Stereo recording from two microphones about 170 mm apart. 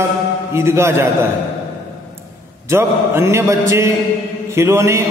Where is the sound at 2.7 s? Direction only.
15° right (ahead or behind).